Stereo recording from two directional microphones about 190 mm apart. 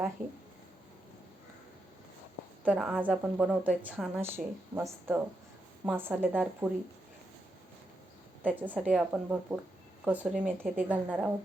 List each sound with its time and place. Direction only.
2.6 s a woman's voice: centre (ahead or behind)
8.4 s a woman's voice: 10° right (ahead or behind)